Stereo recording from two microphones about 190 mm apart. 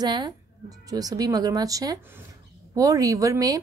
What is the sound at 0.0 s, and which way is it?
Speech, 20° right (ahead or behind).